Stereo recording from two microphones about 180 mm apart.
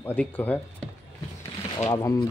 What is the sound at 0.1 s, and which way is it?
Speech, 10° left (ahead or behind).